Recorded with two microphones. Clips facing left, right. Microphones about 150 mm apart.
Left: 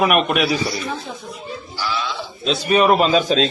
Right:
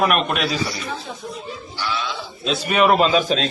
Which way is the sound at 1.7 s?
Centre (ahead or behind).